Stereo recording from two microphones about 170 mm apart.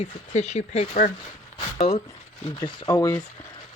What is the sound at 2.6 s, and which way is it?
Speech, 20° left (ahead or behind).